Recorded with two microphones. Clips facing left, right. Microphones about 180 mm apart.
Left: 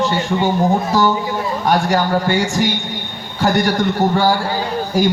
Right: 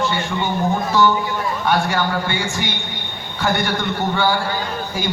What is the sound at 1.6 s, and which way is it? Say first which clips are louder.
A man's voice: left 4 dB; 40° left (ahead or behind).